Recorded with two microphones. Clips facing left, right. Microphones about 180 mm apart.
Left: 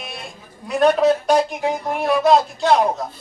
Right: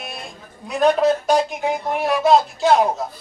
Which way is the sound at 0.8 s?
Centre (ahead or behind).